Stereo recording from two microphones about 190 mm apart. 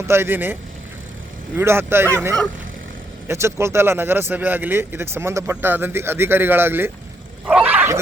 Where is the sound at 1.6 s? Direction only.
10° right (ahead or behind).